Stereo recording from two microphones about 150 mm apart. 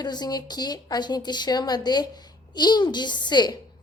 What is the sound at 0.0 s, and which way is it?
A woman's voice, 25° left (ahead or behind).